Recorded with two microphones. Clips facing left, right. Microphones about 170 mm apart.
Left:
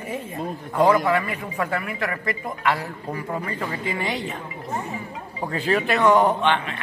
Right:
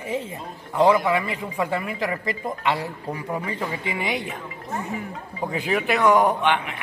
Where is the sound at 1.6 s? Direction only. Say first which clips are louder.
Right 1 dB; 20° right (ahead or behind).